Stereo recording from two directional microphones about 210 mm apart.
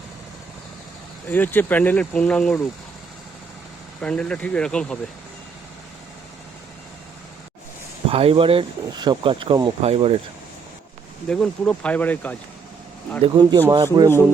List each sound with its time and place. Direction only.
1.3 s speech: 10° left (ahead or behind)
4.0 s speech: 5° left (ahead or behind)
8.1 s speech: 25° right (ahead or behind)
11.3 s speech: 5° left (ahead or behind)
13.2 s speech: 20° right (ahead or behind)